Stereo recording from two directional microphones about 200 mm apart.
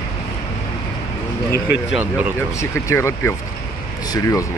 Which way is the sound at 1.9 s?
10° right (ahead or behind).